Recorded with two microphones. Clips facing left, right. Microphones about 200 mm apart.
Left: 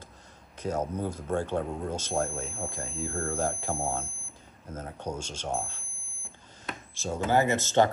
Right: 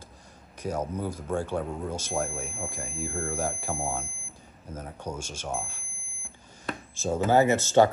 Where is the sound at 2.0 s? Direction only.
10° right (ahead or behind).